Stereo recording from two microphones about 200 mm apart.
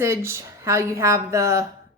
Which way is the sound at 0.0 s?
15° right (ahead or behind).